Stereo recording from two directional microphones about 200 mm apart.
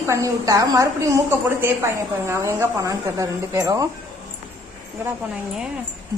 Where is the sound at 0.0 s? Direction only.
15° right (ahead or behind).